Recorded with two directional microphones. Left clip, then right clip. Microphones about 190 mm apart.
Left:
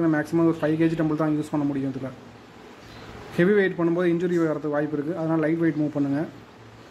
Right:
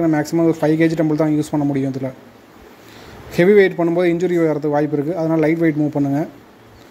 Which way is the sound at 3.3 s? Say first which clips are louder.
Right 9 dB; 30° right (ahead or behind).